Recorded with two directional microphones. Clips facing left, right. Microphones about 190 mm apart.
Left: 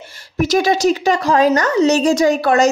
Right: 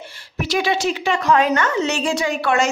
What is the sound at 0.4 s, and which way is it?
A woman's voice, 45° left (ahead or behind).